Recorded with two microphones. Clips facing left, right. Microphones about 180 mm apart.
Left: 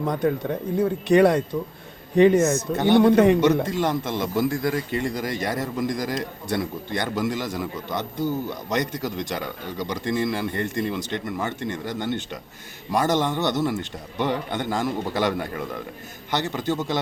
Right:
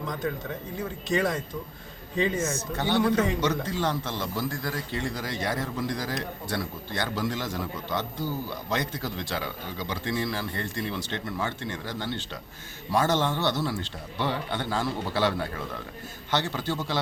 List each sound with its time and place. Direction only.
0.0 s a man's voice: 60° left (ahead or behind)
3.4 s a man's voice: 15° left (ahead or behind)